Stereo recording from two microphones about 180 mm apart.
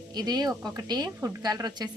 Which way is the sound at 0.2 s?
20° right (ahead or behind).